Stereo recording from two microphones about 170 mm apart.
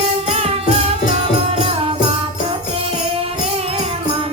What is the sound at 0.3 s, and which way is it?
Music, 35° right (ahead or behind).